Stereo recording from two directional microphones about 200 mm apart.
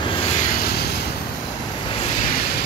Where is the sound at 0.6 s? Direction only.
55° left (ahead or behind).